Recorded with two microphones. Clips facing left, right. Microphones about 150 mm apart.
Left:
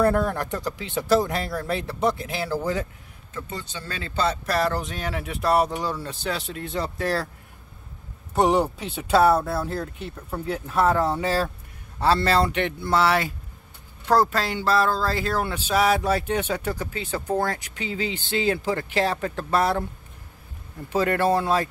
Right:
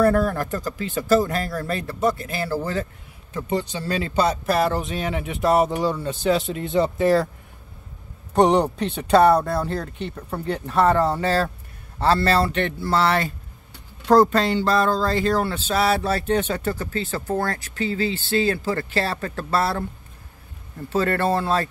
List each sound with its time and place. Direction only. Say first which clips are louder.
0.3 s speech: right 2 dB; 20° left (ahead or behind)
3.3 s speech: right 9 dB; 15° right (ahead or behind)
4.7 s speech: right 4 dB; centre (ahead or behind)
8.4 s speech: right 3 dB; 5° left (ahead or behind)
20.9 s speech: even; 10° left (ahead or behind)